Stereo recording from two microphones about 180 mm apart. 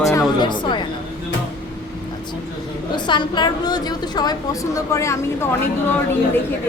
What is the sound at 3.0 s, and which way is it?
A woman's voice, 25° left (ahead or behind).